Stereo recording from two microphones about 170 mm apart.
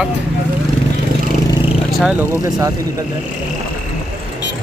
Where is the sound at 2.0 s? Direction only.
5° right (ahead or behind).